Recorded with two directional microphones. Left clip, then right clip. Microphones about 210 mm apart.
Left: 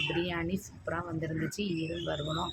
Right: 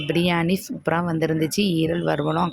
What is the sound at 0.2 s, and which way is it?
Speech, 50° right (ahead or behind).